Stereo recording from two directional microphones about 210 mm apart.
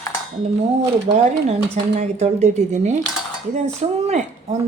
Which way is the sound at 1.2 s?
35° right (ahead or behind).